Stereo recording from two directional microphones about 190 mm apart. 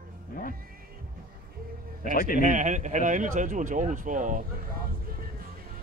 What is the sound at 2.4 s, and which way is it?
Speech, 40° right (ahead or behind).